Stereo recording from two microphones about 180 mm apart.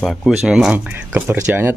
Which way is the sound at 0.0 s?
Centre (ahead or behind).